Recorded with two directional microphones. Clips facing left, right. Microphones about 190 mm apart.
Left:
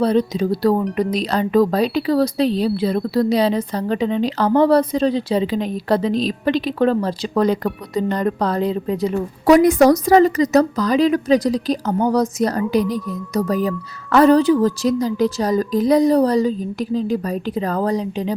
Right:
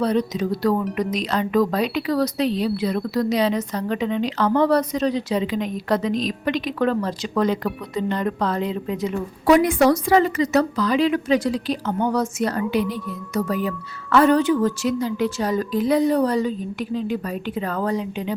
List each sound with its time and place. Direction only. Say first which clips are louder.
0.0 s speech: left 4 dB; 30° left (ahead or behind)